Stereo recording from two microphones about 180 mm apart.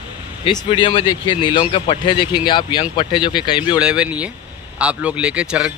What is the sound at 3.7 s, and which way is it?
A man's voice, 5° right (ahead or behind).